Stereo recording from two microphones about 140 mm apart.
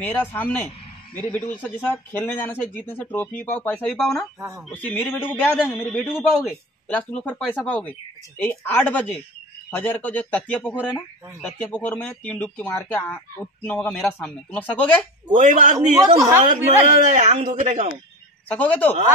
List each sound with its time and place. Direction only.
0.0 s speech: 15° left (ahead or behind)
6.1 s a man's voice: 5° right (ahead or behind)
6.9 s speech: 10° left (ahead or behind)
15.3 s a man's voice: 65° right (ahead or behind)
16.1 s speech: 25° right (ahead or behind)
16.8 s a man's voice: 60° right (ahead or behind)
18.5 s speech: 10° left (ahead or behind)